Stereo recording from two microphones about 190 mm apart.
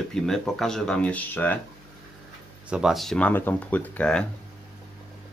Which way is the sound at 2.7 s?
5° right (ahead or behind).